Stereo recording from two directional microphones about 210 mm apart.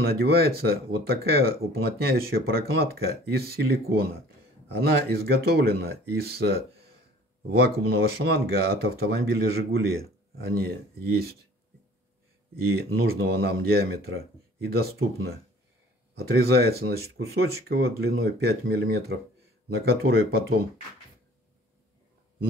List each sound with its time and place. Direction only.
0.0 s speech: 50° right (ahead or behind)
12.5 s speech: 45° right (ahead or behind)
16.2 s speech: 50° right (ahead or behind)